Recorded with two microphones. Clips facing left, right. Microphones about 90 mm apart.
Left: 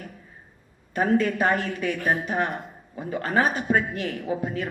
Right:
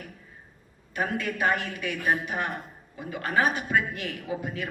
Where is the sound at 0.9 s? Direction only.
35° left (ahead or behind).